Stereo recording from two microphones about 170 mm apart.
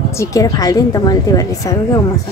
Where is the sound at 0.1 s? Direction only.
20° left (ahead or behind).